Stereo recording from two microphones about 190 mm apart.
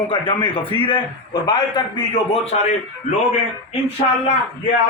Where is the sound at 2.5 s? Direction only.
35° left (ahead or behind).